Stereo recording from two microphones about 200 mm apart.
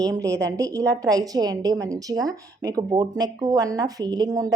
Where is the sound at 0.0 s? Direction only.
15° right (ahead or behind).